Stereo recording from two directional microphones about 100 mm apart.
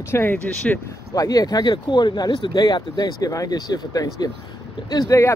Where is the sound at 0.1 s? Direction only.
20° left (ahead or behind).